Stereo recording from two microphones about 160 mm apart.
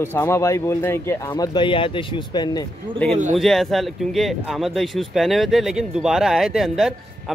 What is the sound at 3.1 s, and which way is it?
Speech, 50° right (ahead or behind).